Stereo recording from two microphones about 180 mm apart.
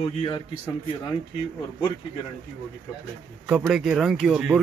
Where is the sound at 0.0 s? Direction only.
25° left (ahead or behind).